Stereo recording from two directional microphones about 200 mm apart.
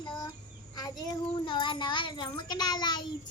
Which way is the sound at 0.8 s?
20° left (ahead or behind).